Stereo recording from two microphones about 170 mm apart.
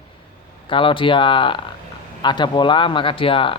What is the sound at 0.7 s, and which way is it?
Speech, 30° left (ahead or behind).